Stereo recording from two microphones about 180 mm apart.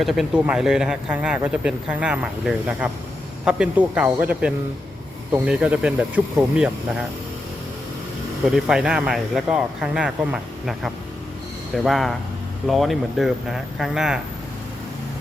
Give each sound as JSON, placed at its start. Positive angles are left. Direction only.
{"t": 0.0, "sound": "speech", "side_deg": 0}
{"t": 8.4, "sound": "speech", "side_deg": 0}